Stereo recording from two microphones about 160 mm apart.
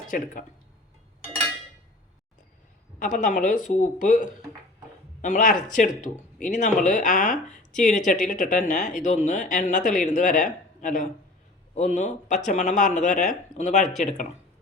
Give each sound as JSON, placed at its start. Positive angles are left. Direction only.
{"t": 0.1, "sound": "a woman's voice", "side_deg": 60}
{"t": 3.0, "sound": "a woman's voice", "side_deg": 55}